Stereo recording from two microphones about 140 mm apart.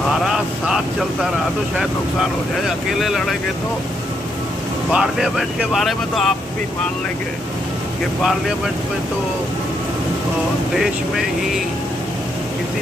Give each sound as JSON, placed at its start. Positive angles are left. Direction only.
{"t": 0.3, "sound": "vehicle", "side_deg": -5}
{"t": 1.8, "sound": "speech", "side_deg": 0}
{"t": 4.9, "sound": "speech", "side_deg": -5}